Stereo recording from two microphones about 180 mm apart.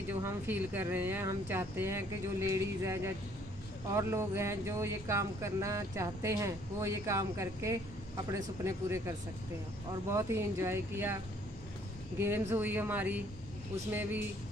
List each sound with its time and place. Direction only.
0.2 s speech: 10° right (ahead or behind)
12.2 s speech: 15° right (ahead or behind)